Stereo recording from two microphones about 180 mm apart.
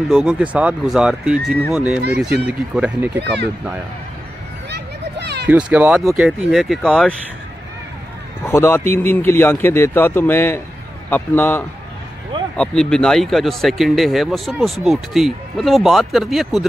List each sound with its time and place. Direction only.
0.1 s speech: 5° right (ahead or behind)
3.2 s speech: 70° right (ahead or behind)
4.6 s a sound: 70° right (ahead or behind)
5.5 s speech: 10° right (ahead or behind)
8.5 s speech: 15° left (ahead or behind)